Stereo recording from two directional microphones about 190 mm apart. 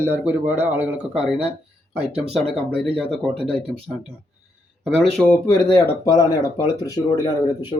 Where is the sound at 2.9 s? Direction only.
Centre (ahead or behind).